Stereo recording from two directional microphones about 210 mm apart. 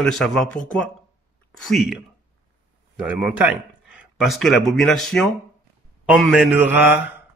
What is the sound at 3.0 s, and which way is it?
Speech, 5° right (ahead or behind).